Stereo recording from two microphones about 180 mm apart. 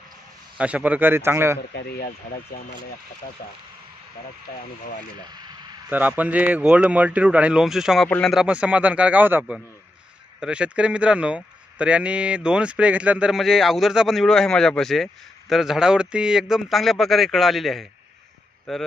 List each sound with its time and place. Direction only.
0.6 s speech: 5° right (ahead or behind)
1.7 s speech: 60° left (ahead or behind)
5.3 s a sound: 20° right (ahead or behind)
5.9 s speech: 10° right (ahead or behind)